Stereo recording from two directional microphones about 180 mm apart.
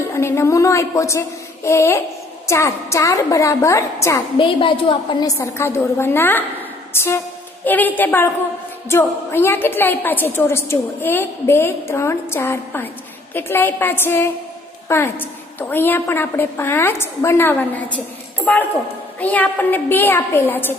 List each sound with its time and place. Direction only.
0.1 s a child's voice: 15° left (ahead or behind)
4.4 s a woman's voice: 30° left (ahead or behind); by 6.4 s 10° left (ahead or behind)
6.9 s a sound: 15° left (ahead or behind)
7.6 s a woman's voice: 10° left (ahead or behind)